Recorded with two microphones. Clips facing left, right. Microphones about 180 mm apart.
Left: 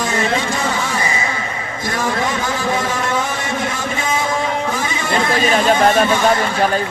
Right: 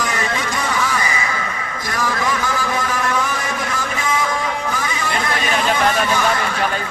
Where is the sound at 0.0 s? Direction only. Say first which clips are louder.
Left 4 dB; 25° left (ahead or behind).